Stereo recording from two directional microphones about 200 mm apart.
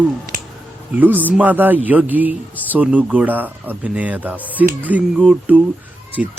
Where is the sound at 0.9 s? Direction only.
10° right (ahead or behind).